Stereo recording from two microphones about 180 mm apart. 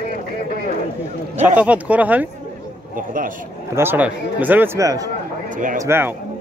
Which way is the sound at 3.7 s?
10° right (ahead or behind).